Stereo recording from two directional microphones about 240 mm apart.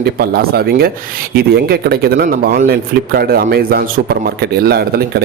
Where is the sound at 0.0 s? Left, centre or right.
Right.